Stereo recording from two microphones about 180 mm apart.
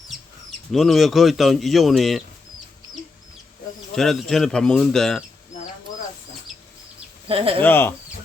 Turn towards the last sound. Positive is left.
turn(degrees=10)  # may be behind; listen again after turning